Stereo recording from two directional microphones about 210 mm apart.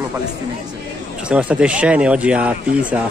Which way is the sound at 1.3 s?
5° right (ahead or behind).